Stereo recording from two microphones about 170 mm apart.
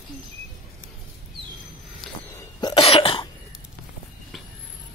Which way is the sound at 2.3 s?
25° left (ahead or behind).